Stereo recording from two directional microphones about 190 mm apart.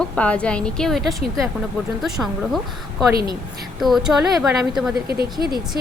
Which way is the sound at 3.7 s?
Centre (ahead or behind).